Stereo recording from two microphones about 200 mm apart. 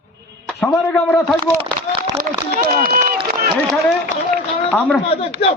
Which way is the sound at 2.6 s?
45° right (ahead or behind).